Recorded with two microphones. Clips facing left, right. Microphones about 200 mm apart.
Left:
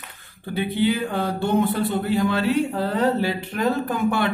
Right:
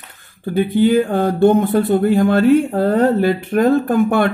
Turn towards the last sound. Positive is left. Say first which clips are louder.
# right 7 dB
turn(degrees=-50)  # may be behind; listen again after turning